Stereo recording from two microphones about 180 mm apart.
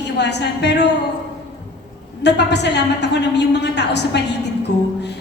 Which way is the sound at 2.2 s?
70° left (ahead or behind).